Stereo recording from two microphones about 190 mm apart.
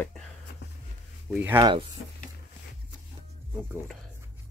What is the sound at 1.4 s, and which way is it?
Speech, 10° right (ahead or behind).